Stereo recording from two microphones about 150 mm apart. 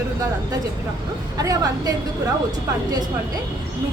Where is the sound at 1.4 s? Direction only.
25° right (ahead or behind).